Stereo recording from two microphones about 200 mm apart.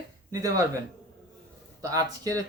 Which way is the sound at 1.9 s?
15° right (ahead or behind).